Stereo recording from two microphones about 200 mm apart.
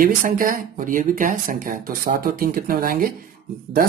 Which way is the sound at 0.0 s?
45° right (ahead or behind).